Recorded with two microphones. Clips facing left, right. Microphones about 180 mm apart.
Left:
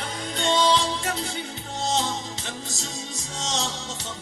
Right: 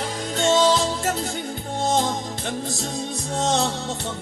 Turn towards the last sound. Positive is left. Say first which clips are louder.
# right 8 dB
turn(degrees=-60)  # may be behind; listen again after turning